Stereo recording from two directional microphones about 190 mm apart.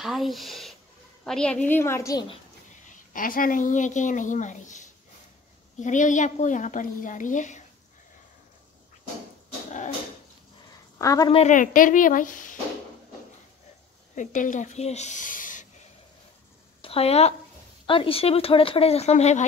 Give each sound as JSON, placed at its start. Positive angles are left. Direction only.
{"t": 0.0, "sound": "a woman's voice", "side_deg": 0}
{"t": 2.9, "sound": "a woman's voice", "side_deg": 45}
{"t": 11.0, "sound": "a woman's voice", "side_deg": 20}
{"t": 11.3, "sound": "a woman's voice", "side_deg": 40}
{"t": 14.1, "sound": "speech", "side_deg": 40}
{"t": 16.8, "sound": "a woman's voice", "side_deg": 30}